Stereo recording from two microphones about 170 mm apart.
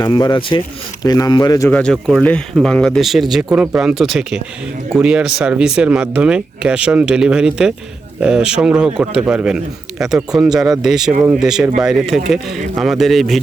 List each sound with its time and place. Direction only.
0.0 s speech: 25° left (ahead or behind)
1.7 s speech: 5° left (ahead or behind)